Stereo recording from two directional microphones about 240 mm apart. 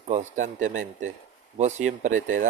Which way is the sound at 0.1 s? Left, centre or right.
Right.